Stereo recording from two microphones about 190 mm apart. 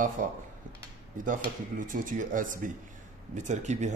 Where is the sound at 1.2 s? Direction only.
45° right (ahead or behind).